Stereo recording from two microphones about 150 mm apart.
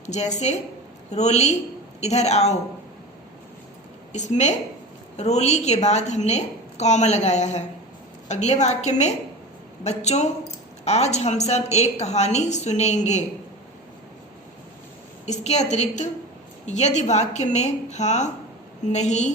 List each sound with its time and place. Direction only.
0.0 s a woman's voice: 50° left (ahead or behind)
4.1 s a woman's voice: 50° left (ahead or behind)
15.3 s a woman's voice: 50° left (ahead or behind)